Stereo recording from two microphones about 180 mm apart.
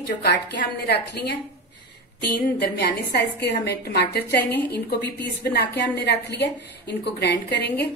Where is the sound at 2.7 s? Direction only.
65° left (ahead or behind).